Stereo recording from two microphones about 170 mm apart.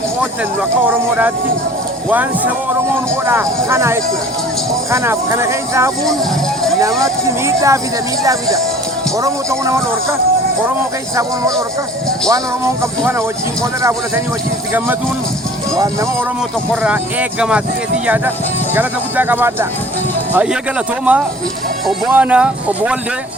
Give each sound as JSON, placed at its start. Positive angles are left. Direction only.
{"t": 0.9, "sound": "speech", "side_deg": -10}
{"t": 7.0, "sound": "speech", "side_deg": -20}
{"t": 12.3, "sound": "speech", "side_deg": -15}
{"t": 15.7, "sound": "speech", "side_deg": -20}
{"t": 16.8, "sound": "speech", "side_deg": -5}
{"t": 18.7, "sound": "speech", "side_deg": -10}